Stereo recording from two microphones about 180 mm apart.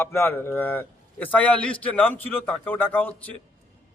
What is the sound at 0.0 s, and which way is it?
A man's voice, 15° left (ahead or behind).